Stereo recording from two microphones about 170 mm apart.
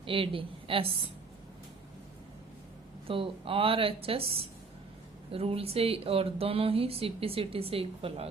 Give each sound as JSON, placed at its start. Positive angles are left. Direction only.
{"t": 0.0, "sound": "a woman's voice", "side_deg": -30}
{"t": 3.1, "sound": "speech", "side_deg": -35}